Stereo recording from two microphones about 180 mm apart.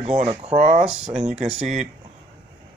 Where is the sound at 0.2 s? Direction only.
35° right (ahead or behind).